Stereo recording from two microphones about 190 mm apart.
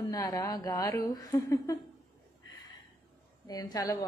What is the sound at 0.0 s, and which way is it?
A woman's voice, 20° left (ahead or behind).